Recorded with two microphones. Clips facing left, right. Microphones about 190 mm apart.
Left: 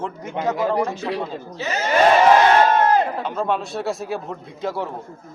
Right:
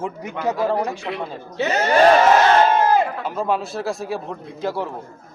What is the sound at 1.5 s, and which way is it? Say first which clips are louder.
Speech: right 6 dB; 65° right (ahead or behind).